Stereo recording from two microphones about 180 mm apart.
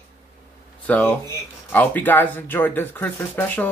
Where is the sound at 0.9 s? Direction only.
10° left (ahead or behind).